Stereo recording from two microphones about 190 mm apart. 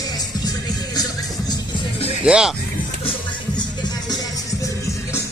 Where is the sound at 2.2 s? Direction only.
5° right (ahead or behind).